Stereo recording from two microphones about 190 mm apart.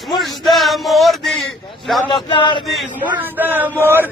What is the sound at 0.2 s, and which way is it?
Music, centre (ahead or behind).